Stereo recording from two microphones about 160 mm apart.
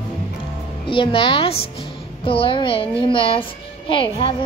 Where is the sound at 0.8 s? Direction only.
30° left (ahead or behind).